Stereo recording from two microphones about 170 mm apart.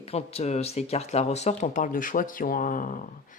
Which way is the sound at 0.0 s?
35° left (ahead or behind).